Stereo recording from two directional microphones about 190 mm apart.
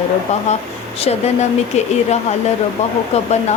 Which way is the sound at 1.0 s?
35° left (ahead or behind).